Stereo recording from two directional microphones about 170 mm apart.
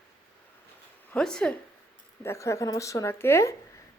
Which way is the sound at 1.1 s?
5° left (ahead or behind).